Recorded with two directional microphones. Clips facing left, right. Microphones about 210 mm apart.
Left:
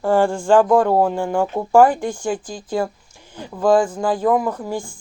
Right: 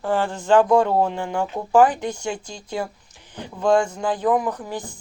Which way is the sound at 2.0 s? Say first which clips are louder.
Left 3 dB; 50° left (ahead or behind).